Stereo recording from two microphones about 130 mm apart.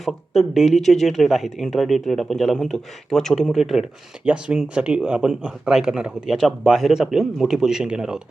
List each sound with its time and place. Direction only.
0.0 s speech: centre (ahead or behind)